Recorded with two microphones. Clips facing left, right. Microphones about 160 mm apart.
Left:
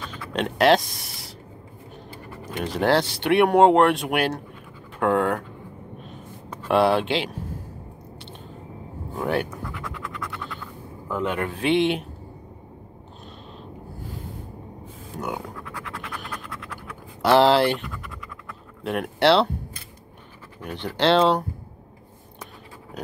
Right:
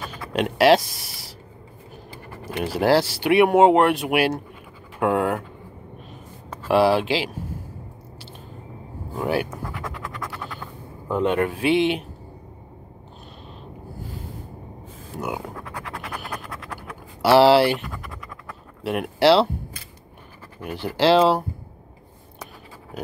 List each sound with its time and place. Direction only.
0.0 s a sound: 10° right (ahead or behind)
2.6 s speech: 5° right (ahead or behind)
6.7 s speech: centre (ahead or behind)
9.1 s speech: 5° right (ahead or behind)
9.8 s scratch: 40° right (ahead or behind)
11.1 s speech: 25° right (ahead or behind)
11.5 s speech: 5° right (ahead or behind)
15.1 s speech: 5° right (ahead or behind)
17.2 s speech: 5° right (ahead or behind)
18.9 s speech: 5° right (ahead or behind)
20.6 s speech: 10° right (ahead or behind)
22.9 s dog: 5° right (ahead or behind)